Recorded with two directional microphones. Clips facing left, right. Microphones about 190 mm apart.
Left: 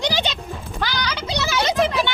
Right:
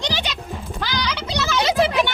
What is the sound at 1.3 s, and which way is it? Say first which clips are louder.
Children playing: right 1 dB; 15° left (ahead or behind).